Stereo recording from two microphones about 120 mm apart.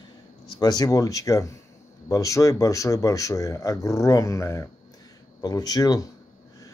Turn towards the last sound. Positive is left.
turn(degrees=30)  # may be behind; listen again after turning